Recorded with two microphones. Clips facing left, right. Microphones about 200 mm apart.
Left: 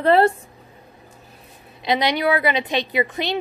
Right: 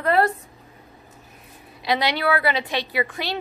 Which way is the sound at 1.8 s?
20° left (ahead or behind).